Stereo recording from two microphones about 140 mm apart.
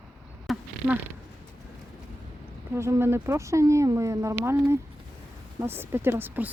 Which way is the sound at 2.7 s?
20° right (ahead or behind).